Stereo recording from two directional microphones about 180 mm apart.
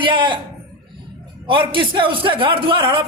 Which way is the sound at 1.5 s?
30° right (ahead or behind).